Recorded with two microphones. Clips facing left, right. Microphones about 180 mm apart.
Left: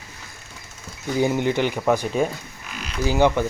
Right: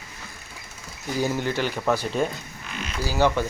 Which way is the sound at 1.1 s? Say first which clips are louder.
Left 4 dB; 20° left (ahead or behind).